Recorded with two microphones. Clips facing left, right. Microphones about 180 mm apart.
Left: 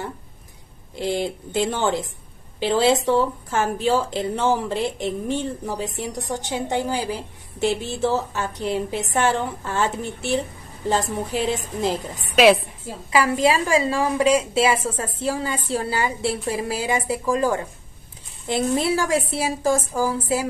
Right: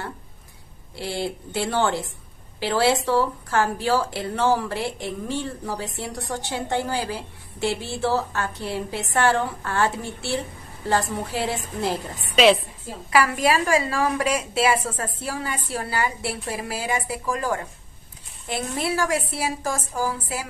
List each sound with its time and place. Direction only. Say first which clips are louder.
0.9 s speech: left 4 dB; 20° left (ahead or behind)
13.1 s speech: left 1 dB; 20° left (ahead or behind)